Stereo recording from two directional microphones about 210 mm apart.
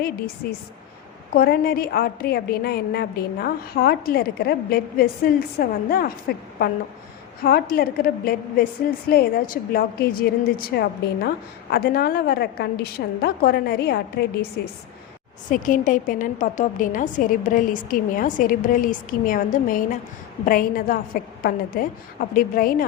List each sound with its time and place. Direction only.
0.4 s a woman's voice: 50° left (ahead or behind)